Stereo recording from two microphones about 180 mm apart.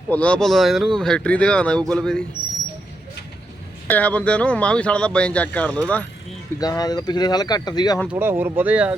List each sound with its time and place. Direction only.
0.1 s speech: 5° left (ahead or behind)
3.8 s speech: 10° left (ahead or behind)
6.6 s speech: 20° left (ahead or behind)
8.1 s speech: 10° right (ahead or behind)